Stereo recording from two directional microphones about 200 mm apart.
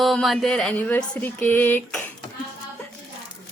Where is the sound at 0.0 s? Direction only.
Centre (ahead or behind).